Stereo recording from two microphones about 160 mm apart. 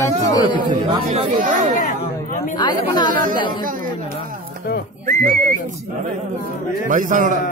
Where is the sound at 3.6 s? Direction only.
60° right (ahead or behind).